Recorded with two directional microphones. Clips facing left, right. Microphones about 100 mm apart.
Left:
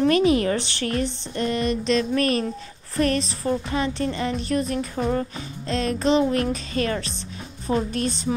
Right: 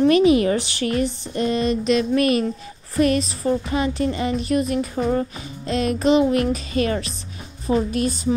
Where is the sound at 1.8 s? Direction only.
10° right (ahead or behind).